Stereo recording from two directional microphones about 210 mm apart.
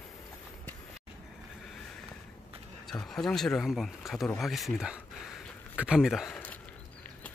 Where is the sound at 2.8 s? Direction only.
Centre (ahead or behind).